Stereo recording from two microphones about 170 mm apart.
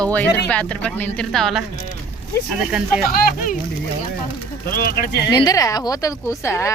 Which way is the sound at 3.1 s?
55° left (ahead or behind).